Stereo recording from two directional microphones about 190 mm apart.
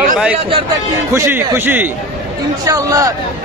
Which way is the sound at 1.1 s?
15° right (ahead or behind).